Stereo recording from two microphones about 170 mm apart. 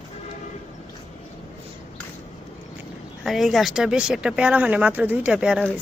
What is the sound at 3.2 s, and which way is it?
Speech, centre (ahead or behind).